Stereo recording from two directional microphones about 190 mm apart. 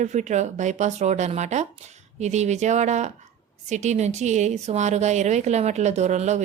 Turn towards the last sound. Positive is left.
turn(degrees=-40)  # may be behind; listen again after turning